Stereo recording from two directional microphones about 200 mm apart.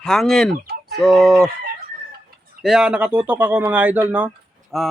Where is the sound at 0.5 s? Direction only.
55° right (ahead or behind).